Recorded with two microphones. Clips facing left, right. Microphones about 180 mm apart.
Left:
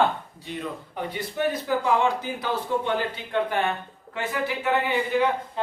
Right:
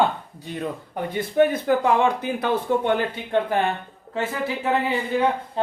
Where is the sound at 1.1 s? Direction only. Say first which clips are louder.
Right 8 dB; 55° right (ahead or behind).